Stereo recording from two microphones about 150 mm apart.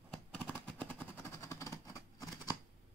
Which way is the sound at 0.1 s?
5° left (ahead or behind).